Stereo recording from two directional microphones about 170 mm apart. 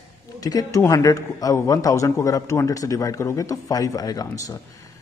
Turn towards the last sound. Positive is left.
turn(degrees=20)  # may be behind; listen again after turning